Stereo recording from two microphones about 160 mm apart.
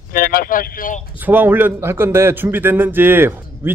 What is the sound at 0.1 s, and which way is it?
Speech, 65° left (ahead or behind).